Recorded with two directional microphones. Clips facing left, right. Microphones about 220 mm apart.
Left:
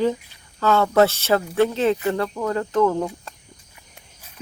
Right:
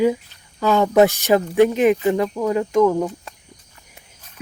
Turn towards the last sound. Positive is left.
turn(degrees=-5)  # may be behind; listen again after turning